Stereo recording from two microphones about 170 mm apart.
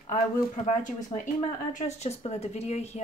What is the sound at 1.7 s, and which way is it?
A woman's voice, 45° left (ahead or behind).